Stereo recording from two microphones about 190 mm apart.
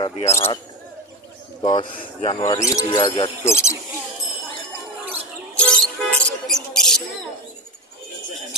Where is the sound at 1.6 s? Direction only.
25° left (ahead or behind).